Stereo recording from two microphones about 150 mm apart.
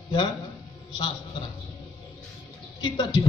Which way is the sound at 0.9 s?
30° left (ahead or behind).